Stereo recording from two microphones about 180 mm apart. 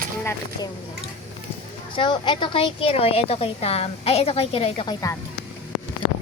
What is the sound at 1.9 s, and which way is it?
A woman's voice, 25° left (ahead or behind).